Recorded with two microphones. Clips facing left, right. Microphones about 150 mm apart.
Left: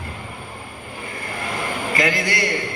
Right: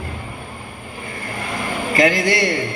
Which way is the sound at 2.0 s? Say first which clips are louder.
Right 6 dB; 30° right (ahead or behind).